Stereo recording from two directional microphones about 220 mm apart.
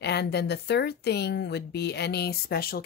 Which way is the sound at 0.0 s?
50° left (ahead or behind).